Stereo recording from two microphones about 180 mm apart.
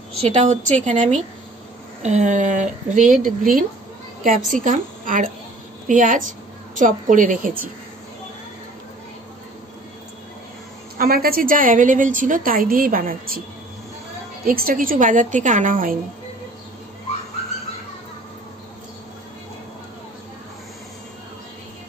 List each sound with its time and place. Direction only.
0.2 s a woman's voice: 35° right (ahead or behind)
11.0 s a woman's voice: 55° right (ahead or behind)
14.4 s a woman's voice: 50° right (ahead or behind)